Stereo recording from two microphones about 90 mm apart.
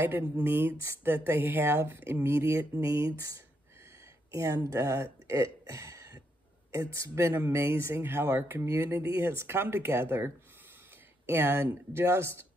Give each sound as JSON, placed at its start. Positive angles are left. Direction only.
{"t": 0.0, "sound": "speech", "side_deg": -25}